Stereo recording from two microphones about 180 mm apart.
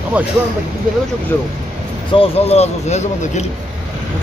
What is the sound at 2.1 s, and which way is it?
Speech, 35° left (ahead or behind).